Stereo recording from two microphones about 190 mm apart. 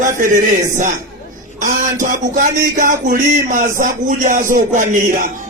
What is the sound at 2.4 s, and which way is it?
Speech, 45° right (ahead or behind).